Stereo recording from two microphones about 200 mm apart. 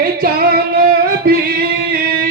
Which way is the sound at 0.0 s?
50° right (ahead or behind).